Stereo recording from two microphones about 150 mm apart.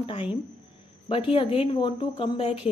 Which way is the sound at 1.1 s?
35° left (ahead or behind).